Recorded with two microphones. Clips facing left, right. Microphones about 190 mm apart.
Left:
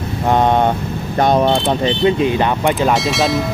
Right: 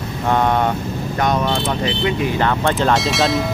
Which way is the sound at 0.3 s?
20° left (ahead or behind).